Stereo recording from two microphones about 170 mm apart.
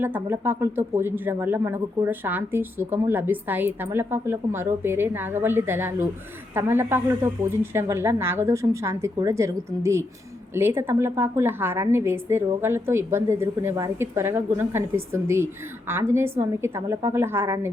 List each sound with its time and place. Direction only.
0.0 s speech: 10° right (ahead or behind)